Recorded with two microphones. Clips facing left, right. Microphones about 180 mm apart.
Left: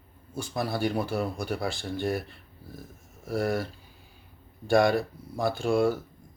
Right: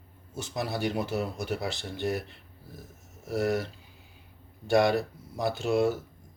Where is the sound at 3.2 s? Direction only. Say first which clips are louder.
Even; 20° right (ahead or behind).